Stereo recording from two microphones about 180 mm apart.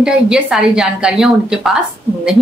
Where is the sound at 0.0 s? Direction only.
5° right (ahead or behind).